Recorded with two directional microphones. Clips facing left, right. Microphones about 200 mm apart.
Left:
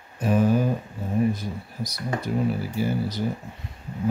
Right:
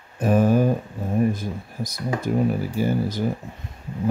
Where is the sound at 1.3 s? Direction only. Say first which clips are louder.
Right 2 dB; 50° right (ahead or behind).